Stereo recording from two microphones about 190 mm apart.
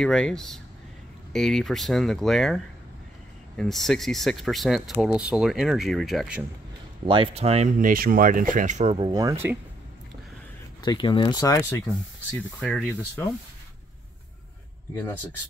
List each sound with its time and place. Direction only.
0.0 s speech: 5° left (ahead or behind)
7.1 s speech: 30° right (ahead or behind)
9.1 s speech: 15° right (ahead or behind)
10.8 s speech: 25° left (ahead or behind)
12.5 s speech: 5° left (ahead or behind)